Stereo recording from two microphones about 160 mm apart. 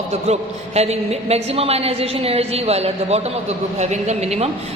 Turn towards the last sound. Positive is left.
turn(degrees=-40)  # may be behind; listen again after turning